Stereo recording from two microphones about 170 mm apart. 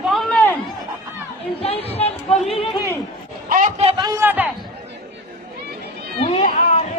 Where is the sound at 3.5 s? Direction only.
50° right (ahead or behind).